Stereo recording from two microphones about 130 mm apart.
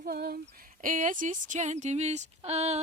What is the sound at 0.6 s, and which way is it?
Speech, 90° right.